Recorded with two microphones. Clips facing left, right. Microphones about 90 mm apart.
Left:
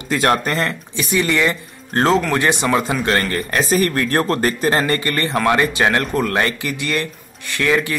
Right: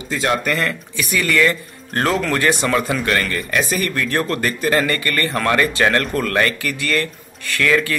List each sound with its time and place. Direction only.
0.1 s speech: 55° left (ahead or behind)
0.4 s speech: 30° left (ahead or behind)
3.1 s a man's voice: 35° left (ahead or behind); by 8.0 s 20° left (ahead or behind)